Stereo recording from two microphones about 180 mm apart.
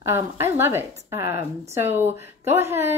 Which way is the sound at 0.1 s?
15° right (ahead or behind).